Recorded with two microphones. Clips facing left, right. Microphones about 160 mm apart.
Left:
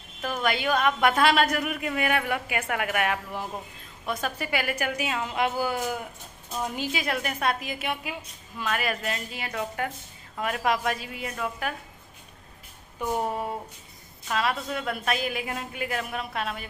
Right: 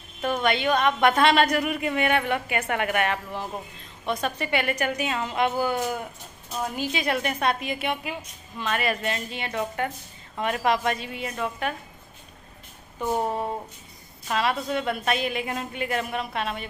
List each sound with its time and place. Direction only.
0.2 s a woman's voice: 5° left (ahead or behind)
14.2 s a woman's voice: centre (ahead or behind)